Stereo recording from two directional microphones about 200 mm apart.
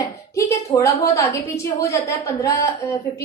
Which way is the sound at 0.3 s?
15° left (ahead or behind).